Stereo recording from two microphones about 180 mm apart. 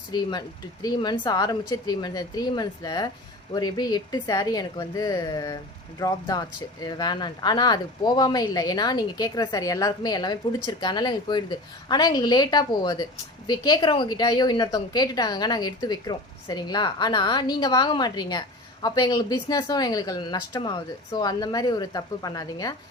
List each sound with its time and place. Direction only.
0.1 s a woman's voice: 25° left (ahead or behind)